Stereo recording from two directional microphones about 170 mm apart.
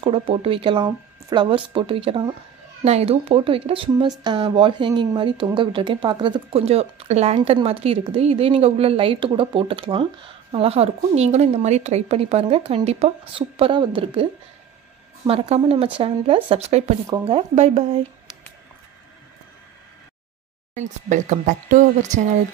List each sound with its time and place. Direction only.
0.0 s a woman's voice: 35° right (ahead or behind)
15.2 s a woman's voice: 35° right (ahead or behind)
20.7 s a woman's voice: 45° right (ahead or behind)